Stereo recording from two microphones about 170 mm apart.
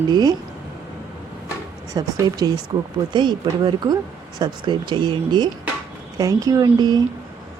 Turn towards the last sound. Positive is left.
turn(degrees=-25)  # may be behind; listen again after turning